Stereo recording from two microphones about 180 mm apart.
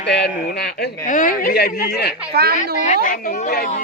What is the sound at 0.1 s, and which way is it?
A man's voice, 65° left (ahead or behind).